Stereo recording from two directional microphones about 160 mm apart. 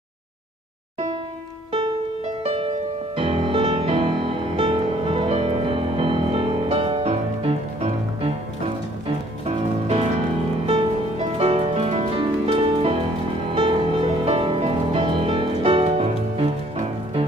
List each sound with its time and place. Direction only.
3.2 s music: 35° right (ahead or behind)
10.7 s music: 35° right (ahead or behind)